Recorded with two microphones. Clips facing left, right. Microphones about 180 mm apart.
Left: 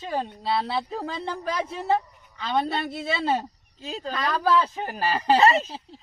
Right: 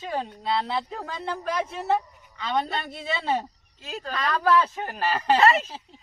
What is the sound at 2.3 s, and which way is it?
A man's voice, 10° left (ahead or behind).